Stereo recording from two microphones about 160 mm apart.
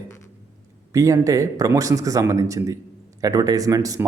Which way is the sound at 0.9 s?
20° right (ahead or behind).